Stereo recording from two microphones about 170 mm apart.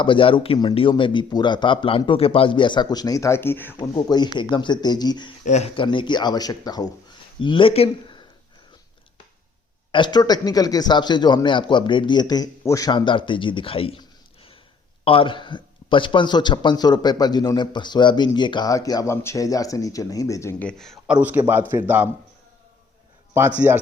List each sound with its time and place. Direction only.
0.0 s a man's voice: 30° left (ahead or behind); by 3.8 s 10° left (ahead or behind)
3.8 s a man's voice: 25° left (ahead or behind)
5.5 s speech: 40° left (ahead or behind)
5.8 s a man's voice: 30° left (ahead or behind)
9.9 s a man's voice: 25° left (ahead or behind)
20.7 s a man's voice: centre (ahead or behind)
21.2 s a man's voice: 10° right (ahead or behind)
23.6 s a man's voice: 10° right (ahead or behind)